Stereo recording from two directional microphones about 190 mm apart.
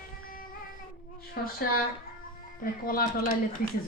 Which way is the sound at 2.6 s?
50° left (ahead or behind).